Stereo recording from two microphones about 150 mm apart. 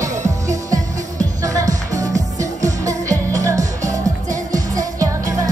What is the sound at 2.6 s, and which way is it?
Music, 20° right (ahead or behind).